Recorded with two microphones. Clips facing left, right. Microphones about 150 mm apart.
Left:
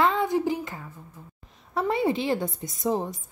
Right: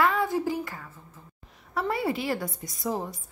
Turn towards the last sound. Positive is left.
turn(degrees=20)  # may be behind; listen again after turning